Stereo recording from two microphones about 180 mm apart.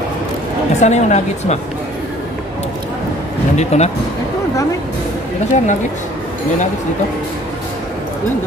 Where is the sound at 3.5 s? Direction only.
40° left (ahead or behind).